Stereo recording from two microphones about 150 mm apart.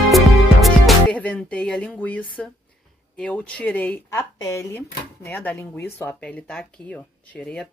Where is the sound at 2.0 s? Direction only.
10° left (ahead or behind).